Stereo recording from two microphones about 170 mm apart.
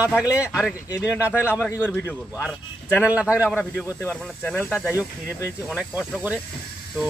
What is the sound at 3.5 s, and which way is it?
Speech, 5° left (ahead or behind).